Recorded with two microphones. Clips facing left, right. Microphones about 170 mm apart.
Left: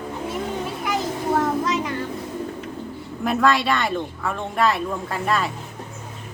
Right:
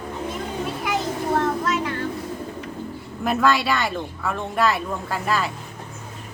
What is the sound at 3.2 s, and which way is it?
Speech, centre (ahead or behind).